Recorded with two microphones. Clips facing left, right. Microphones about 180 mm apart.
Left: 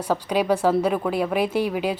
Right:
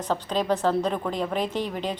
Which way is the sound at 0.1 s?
10° left (ahead or behind).